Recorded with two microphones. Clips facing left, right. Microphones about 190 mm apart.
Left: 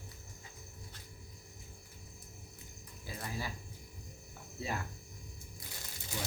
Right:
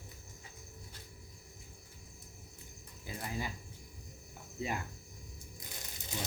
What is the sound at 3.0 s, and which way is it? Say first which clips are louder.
Speech: right 2 dB; 20° right (ahead or behind).